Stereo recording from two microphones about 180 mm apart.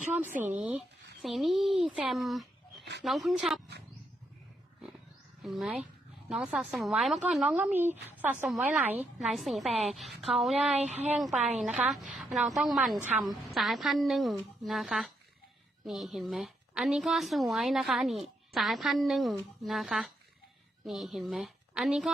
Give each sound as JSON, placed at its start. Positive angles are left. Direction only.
{"t": 0.3, "sound": "speech", "side_deg": -45}
{"t": 0.5, "sound": "a woman's voice", "side_deg": -5}
{"t": 5.4, "sound": "a woman's voice", "side_deg": 0}
{"t": 10.8, "sound": "speech", "side_deg": -40}
{"t": 11.1, "sound": "a woman's voice", "side_deg": 0}